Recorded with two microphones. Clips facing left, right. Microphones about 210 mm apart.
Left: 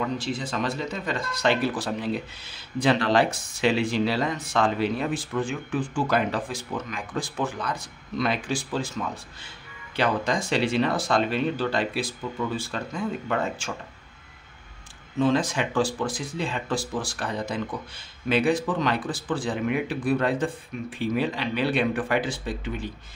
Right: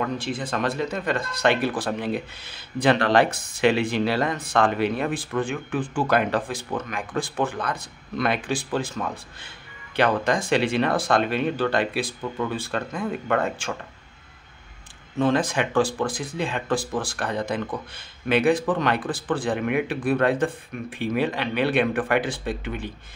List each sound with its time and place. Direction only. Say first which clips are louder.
0.0 s speech: right 1 dB; 55° right (ahead or behind)
15.1 s speech: right 1 dB; 55° right (ahead or behind)